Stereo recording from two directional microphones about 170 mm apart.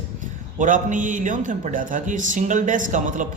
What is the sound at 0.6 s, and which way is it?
A man's voice, 50° right (ahead or behind).